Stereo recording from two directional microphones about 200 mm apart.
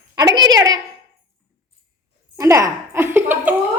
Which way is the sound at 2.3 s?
15° right (ahead or behind).